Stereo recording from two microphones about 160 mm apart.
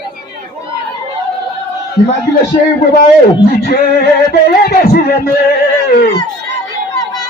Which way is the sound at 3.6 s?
85° left.